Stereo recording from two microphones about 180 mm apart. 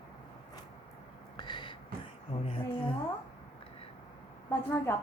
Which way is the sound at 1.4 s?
25° left (ahead or behind).